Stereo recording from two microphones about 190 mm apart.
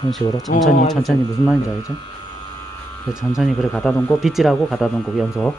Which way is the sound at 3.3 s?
Centre (ahead or behind).